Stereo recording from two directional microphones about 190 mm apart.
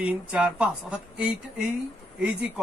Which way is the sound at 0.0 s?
5° right (ahead or behind).